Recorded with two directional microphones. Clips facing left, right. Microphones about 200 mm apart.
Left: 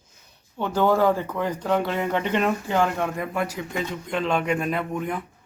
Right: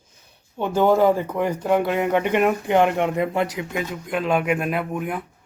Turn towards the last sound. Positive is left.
turn(degrees=-5)  # may be behind; listen again after turning